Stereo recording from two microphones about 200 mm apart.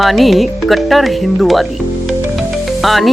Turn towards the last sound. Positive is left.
turn(degrees=0)  # may be behind; listen again after turning